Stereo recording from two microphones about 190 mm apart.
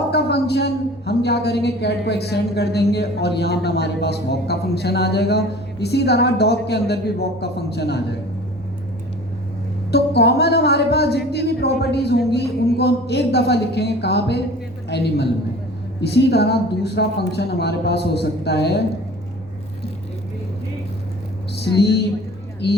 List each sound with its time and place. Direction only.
0.1 s a woman's voice: 60° left (ahead or behind)
9.9 s a woman's voice: 60° left (ahead or behind)